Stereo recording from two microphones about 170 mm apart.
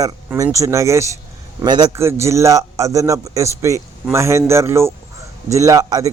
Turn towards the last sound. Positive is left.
turn(degrees=-20)  # may be behind; listen again after turning